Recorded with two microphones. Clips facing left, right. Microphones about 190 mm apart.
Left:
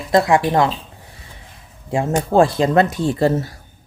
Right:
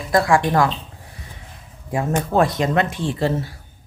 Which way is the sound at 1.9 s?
25° left (ahead or behind).